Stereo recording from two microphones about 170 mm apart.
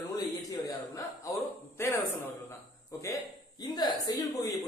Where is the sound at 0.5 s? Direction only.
20° left (ahead or behind).